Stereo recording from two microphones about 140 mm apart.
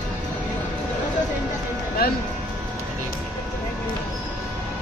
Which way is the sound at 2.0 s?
90° left.